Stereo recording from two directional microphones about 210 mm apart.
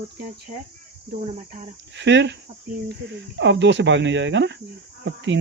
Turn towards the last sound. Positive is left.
turn(degrees=-60)  # may be behind; listen again after turning